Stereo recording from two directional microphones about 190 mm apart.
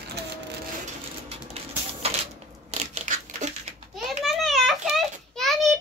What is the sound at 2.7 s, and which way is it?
Crushing, 35° right (ahead or behind).